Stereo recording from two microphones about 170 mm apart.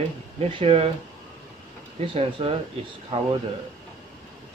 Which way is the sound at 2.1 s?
35° right (ahead or behind).